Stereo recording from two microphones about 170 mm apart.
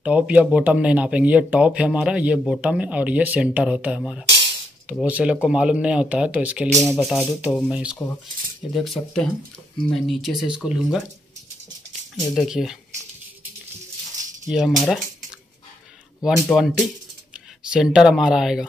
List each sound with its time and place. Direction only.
0.0 s speech: 10° right (ahead or behind)
6.7 s speech: 5° left (ahead or behind)
12.2 s speech: centre (ahead or behind)
14.5 s speech: 5° right (ahead or behind)
16.4 s speech: centre (ahead or behind)